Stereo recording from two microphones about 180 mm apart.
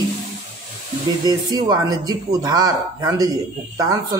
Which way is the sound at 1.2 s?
20° right (ahead or behind).